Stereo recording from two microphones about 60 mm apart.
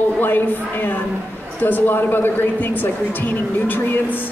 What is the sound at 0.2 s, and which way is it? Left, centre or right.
A woman's voice, left.